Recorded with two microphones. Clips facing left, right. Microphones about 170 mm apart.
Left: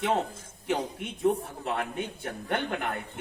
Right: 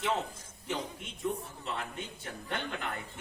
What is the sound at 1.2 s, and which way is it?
A man's voice, 60° left (ahead or behind).